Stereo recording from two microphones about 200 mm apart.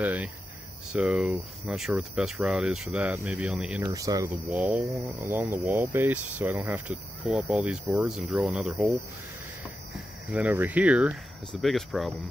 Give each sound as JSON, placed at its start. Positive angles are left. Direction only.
{"t": 0.0, "sound": "cricket", "side_deg": -10}
{"t": 0.9, "sound": "speech", "side_deg": 0}
{"t": 3.8, "sound": "speech", "side_deg": -15}
{"t": 4.3, "sound": "speech", "side_deg": -5}
{"t": 10.3, "sound": "speech", "side_deg": -10}